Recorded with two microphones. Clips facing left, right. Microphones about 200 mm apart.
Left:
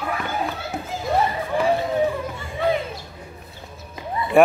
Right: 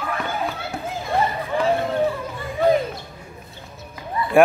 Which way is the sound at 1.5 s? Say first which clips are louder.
Even; 15° left (ahead or behind).